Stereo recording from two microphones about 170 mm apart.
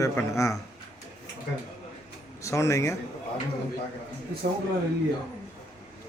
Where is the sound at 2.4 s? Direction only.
15° left (ahead or behind).